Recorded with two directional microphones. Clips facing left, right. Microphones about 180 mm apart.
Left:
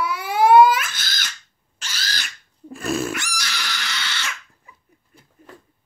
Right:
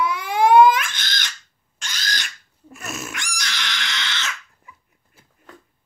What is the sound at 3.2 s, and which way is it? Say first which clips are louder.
Pig: left 1 dB; 5° left (ahead or behind).